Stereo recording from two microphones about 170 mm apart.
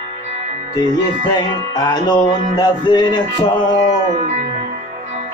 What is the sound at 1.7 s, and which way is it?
Speech, 25° left (ahead or behind).